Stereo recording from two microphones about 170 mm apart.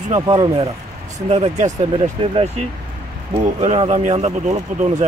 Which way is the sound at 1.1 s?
40° right (ahead or behind).